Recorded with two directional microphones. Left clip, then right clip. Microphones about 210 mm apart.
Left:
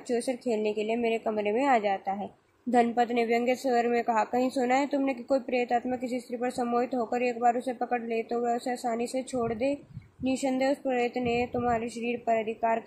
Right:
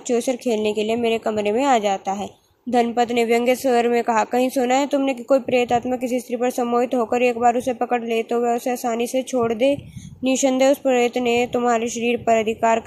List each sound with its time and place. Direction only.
0.1 s speech: 20° right (ahead or behind)